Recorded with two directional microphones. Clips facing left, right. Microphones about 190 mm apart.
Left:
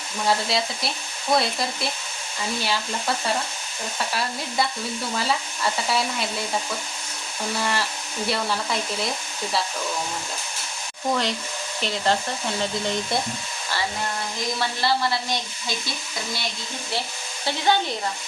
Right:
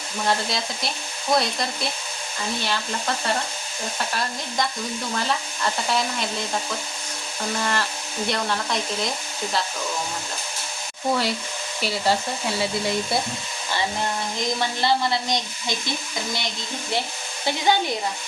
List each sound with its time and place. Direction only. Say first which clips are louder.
0.3 s speech: left 2 dB; 5° left (ahead or behind)
7.6 s speech: even; 5° left (ahead or behind)
11.1 s hair dryer: right 1 dB; 5° right (ahead or behind)
14.8 s a woman's voice: right 1 dB; 20° right (ahead or behind)
17.4 s hair dryer: right 1 dB; 15° right (ahead or behind)